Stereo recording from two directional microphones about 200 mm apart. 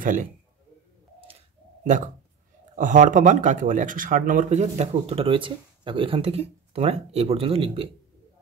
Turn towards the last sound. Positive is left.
turn(degrees=-30)  # may be behind; listen again after turning